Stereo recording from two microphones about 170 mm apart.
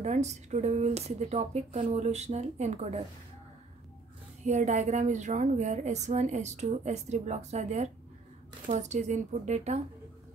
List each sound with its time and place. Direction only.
0.0 s speech: 40° right (ahead or behind)
4.5 s a woman's voice: 45° right (ahead or behind)